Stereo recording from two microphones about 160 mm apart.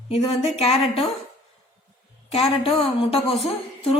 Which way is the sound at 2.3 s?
40° left (ahead or behind).